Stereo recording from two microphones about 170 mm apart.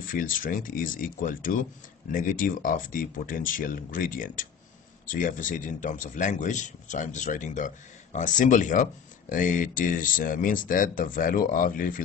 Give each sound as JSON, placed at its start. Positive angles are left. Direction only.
{"t": 0.0, "sound": "a man's voice", "side_deg": 55}